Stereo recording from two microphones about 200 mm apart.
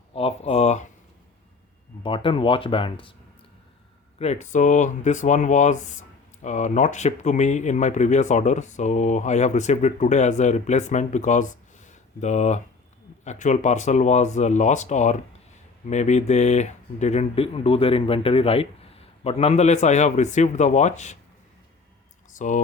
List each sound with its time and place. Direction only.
0.1 s speech: 30° left (ahead or behind)
2.0 s speech: 25° left (ahead or behind)
4.2 s speech: 35° left (ahead or behind)
22.3 s speech: 40° left (ahead or behind)